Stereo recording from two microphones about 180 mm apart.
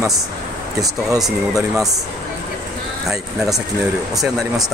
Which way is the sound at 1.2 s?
Centre (ahead or behind).